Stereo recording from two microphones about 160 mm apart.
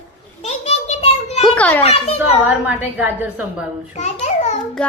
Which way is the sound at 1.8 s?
40° left (ahead or behind).